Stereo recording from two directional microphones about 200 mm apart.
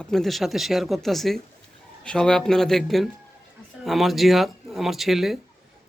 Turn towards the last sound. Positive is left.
turn(degrees=0)  # may be behind; listen again after turning